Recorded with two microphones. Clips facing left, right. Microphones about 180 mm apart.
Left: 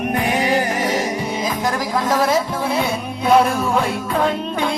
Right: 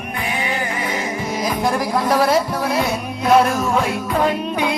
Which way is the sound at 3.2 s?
Centre (ahead or behind).